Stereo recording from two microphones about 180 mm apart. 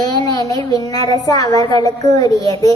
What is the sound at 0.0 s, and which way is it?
A child's voice, 20° left (ahead or behind).